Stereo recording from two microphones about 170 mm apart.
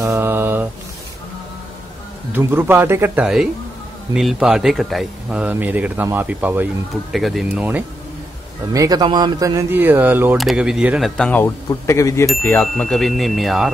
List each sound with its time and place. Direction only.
0.0 s mantra: 15° right (ahead or behind)
2.3 s speech: 10° right (ahead or behind)
4.1 s a man's voice: 5° right (ahead or behind)
8.7 s a man's voice: 20° right (ahead or behind); by 11.1 s 5° right (ahead or behind)
11.1 s speech: 10° left (ahead or behind)
12.4 s a man's voice: 10° left (ahead or behind)